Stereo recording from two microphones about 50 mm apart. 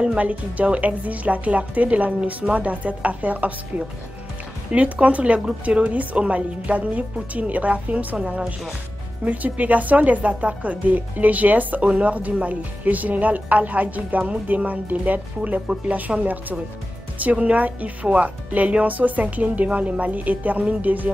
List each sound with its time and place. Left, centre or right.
0.2 s speech: right
4.7 s speech: right
16.1 s a woman's voice: centre; by 21.1 s right